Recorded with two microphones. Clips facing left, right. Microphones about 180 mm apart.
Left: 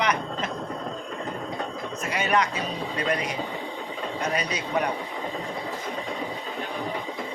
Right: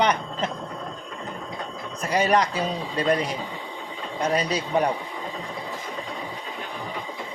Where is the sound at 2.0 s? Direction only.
35° right (ahead or behind).